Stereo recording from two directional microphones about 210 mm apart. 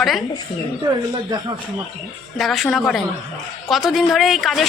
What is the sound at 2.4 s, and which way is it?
A woman's voice, centre (ahead or behind).